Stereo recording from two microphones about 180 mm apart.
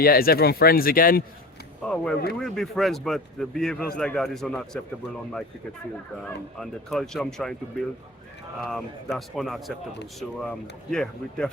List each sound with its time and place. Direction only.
0.0 s speech: 55° left (ahead or behind)
1.8 s a man's voice: 5° left (ahead or behind)
6.6 s a man's voice: centre (ahead or behind)
8.6 s a man's voice: centre (ahead or behind)
10.9 s a man's voice: 5° left (ahead or behind)